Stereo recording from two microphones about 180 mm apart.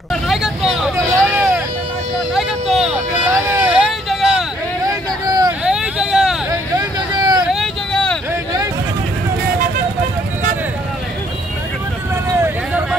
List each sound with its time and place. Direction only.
0.1 s vehicle: centre (ahead or behind)
4.8 s vehicle: 20° right (ahead or behind)
5.6 s vehicle: 5° right (ahead or behind)
6.8 s vehicle: 20° right (ahead or behind)
7.4 s vehicle: centre (ahead or behind)